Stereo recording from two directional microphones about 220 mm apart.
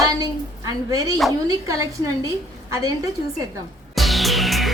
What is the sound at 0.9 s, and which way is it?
Speech, 15° right (ahead or behind).